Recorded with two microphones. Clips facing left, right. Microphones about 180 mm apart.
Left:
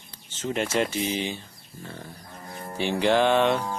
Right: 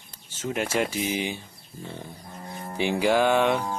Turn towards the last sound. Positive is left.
turn(degrees=-10)  # may be behind; listen again after turning